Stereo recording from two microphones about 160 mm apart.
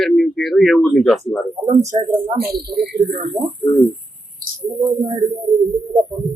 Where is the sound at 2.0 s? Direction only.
55° right (ahead or behind); by 3.2 s 90° right.